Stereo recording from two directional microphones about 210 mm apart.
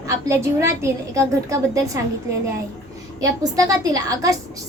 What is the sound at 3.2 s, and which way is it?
A woman's voice, 15° right (ahead or behind).